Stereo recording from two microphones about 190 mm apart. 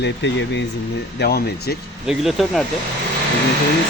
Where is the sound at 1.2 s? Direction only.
55° left (ahead or behind).